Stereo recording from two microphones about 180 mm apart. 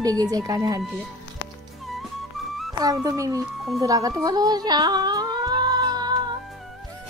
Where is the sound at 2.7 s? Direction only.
20° right (ahead or behind).